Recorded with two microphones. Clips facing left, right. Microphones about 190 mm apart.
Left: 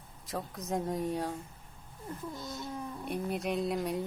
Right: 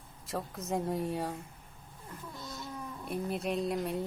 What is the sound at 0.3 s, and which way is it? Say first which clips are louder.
A woman's voice: even; centre (ahead or behind).